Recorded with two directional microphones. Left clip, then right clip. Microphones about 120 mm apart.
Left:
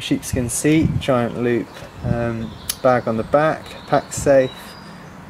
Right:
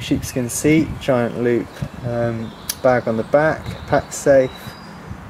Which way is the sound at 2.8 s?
15° left (ahead or behind).